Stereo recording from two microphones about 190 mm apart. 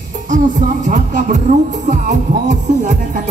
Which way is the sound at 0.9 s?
45° right (ahead or behind).